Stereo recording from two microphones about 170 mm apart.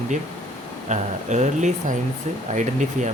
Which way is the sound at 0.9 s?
45° right (ahead or behind).